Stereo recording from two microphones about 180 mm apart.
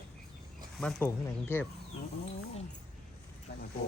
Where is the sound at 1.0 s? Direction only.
10° left (ahead or behind).